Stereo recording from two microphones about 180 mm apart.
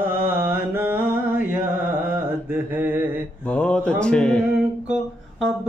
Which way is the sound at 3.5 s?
5° left (ahead or behind).